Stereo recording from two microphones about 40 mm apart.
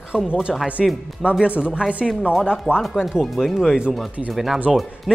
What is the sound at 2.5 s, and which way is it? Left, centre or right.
A man's voice, centre.